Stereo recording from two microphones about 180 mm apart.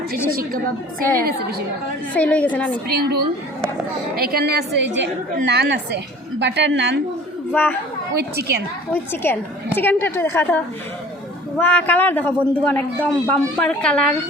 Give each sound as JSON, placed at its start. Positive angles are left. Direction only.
{"t": 0.3, "sound": "a woman's voice", "side_deg": -50}
{"t": 2.1, "sound": "a woman's voice", "side_deg": 10}
{"t": 2.9, "sound": "a woman's voice", "side_deg": -60}
{"t": 5.5, "sound": "a woman's voice", "side_deg": -70}
{"t": 7.5, "sound": "a woman's voice", "side_deg": 10}
{"t": 8.2, "sound": "a woman's voice", "side_deg": -65}
{"t": 8.9, "sound": "a woman's voice", "side_deg": 10}
{"t": 11.6, "sound": "a woman's voice", "side_deg": 10}